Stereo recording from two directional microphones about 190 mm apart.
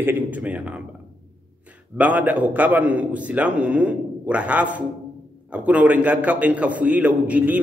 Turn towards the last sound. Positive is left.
turn(degrees=-10)  # may be behind; listen again after turning